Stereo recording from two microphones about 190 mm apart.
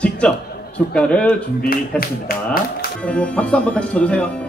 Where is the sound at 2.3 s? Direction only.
50° left (ahead or behind).